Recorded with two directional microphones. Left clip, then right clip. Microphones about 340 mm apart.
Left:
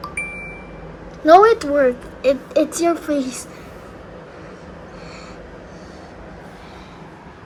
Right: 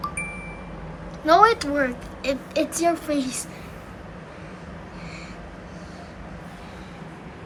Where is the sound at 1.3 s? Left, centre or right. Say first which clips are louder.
Left 6 dB; left.